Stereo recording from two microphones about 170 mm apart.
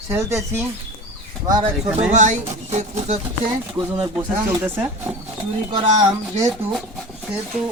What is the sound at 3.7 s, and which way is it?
Speech, 25° right (ahead or behind).